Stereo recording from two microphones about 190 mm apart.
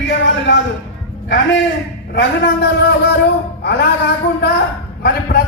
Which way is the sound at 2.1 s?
65° left (ahead or behind).